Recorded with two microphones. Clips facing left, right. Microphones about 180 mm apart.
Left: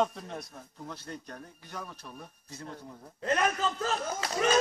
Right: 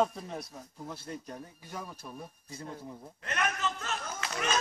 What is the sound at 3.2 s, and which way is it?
A man's voice, 30° left (ahead or behind).